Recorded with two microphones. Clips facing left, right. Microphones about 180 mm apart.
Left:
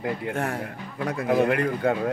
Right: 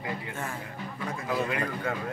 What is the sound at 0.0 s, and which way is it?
Speech, 65° left (ahead or behind).